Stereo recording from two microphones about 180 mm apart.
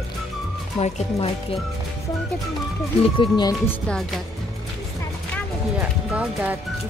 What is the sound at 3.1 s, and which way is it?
Speech, 25° left (ahead or behind).